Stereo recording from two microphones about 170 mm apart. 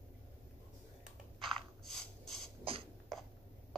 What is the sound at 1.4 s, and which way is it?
Mechanisms, 5° left (ahead or behind).